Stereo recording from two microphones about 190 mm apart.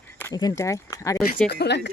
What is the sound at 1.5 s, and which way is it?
Speech, 60° left (ahead or behind).